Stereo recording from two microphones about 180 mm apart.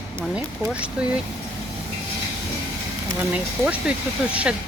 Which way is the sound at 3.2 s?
5° right (ahead or behind).